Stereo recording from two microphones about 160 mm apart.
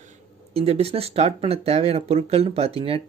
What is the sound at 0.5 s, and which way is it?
Speech, 40° right (ahead or behind).